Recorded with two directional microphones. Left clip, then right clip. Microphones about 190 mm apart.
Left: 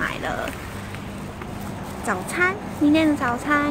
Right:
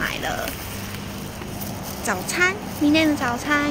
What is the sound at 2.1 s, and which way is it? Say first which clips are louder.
Speech: right 1 dB; 10° left (ahead or behind).